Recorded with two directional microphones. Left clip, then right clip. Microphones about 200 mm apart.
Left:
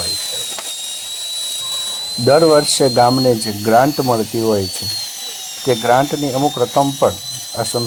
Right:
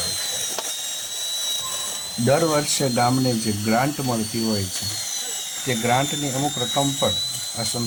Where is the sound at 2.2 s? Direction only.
10° left (ahead or behind).